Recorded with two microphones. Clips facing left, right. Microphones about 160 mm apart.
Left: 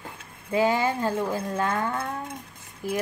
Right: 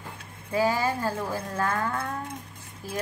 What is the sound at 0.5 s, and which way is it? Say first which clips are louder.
Speech: left 2 dB; 20° left (ahead or behind).